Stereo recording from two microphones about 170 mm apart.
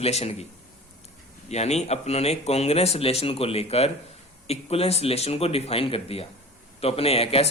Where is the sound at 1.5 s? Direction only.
40° left (ahead or behind).